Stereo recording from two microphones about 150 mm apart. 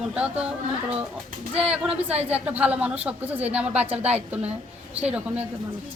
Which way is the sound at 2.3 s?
10° right (ahead or behind).